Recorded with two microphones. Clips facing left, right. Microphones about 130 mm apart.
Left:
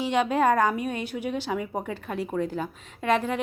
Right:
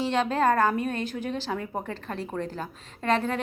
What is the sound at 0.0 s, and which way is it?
A woman's voice, 10° left (ahead or behind).